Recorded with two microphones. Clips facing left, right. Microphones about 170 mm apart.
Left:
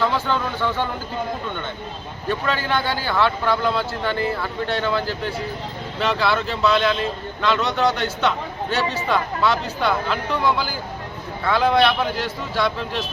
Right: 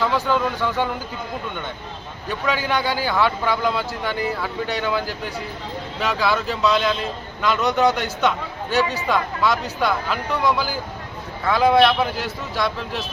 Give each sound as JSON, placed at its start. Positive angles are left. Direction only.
{"t": 0.0, "sound": "a man's voice", "side_deg": -5}
{"t": 2.5, "sound": "a man's voice", "side_deg": -10}
{"t": 11.4, "sound": "a man's voice", "side_deg": -10}